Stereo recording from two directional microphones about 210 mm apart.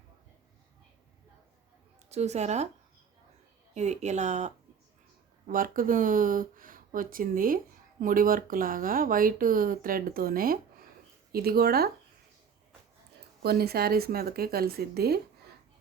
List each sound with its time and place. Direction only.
2.0 s speech: 30° right (ahead or behind)
3.8 s speech: 35° right (ahead or behind)
13.4 s speech: 50° right (ahead or behind)